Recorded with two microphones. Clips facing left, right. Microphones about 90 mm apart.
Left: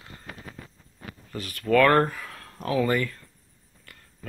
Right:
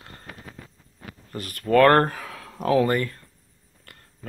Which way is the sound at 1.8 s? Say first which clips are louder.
Right 5 dB; 65° right (ahead or behind).